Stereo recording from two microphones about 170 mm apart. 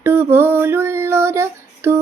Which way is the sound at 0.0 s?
15° right (ahead or behind).